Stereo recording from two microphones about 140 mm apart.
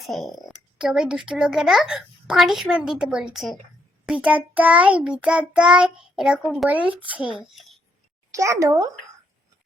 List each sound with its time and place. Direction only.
0.0 s a child's voice: centre (ahead or behind)
8.3 s a child's voice: 20° right (ahead or behind)